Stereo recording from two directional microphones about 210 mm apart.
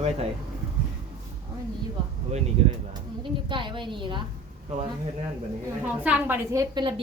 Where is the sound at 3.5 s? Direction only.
25° right (ahead or behind).